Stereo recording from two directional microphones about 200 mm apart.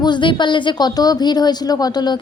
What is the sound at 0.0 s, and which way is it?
A woman's voice, 25° left (ahead or behind).